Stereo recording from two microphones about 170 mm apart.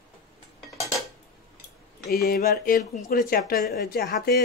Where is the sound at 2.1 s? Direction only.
60° left (ahead or behind).